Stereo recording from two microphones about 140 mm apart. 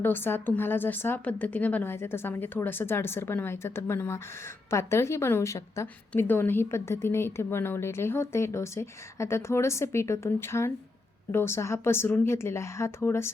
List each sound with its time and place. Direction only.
0.0 s a woman's voice: 15° left (ahead or behind)